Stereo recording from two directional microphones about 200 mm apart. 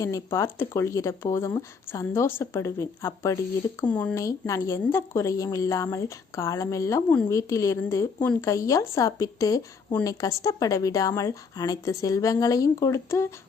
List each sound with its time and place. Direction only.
0.0 s speech: 15° left (ahead or behind)